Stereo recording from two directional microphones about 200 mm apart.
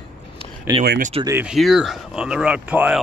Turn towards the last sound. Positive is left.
turn(degrees=-5)  # may be behind; listen again after turning